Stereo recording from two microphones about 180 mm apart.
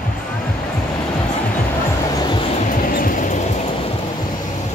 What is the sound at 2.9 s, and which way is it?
Music, 50° left (ahead or behind).